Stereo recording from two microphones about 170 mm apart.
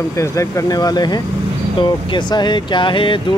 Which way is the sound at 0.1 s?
15° left (ahead or behind).